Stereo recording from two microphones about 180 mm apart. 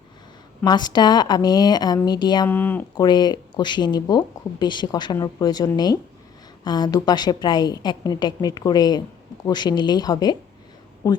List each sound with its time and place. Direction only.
0.6 s speech: 25° left (ahead or behind)
2.5 s speech: 10° left (ahead or behind)
2.9 s speech: 25° left (ahead or behind)